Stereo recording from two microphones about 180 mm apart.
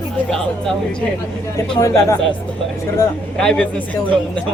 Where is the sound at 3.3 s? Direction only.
5° left (ahead or behind).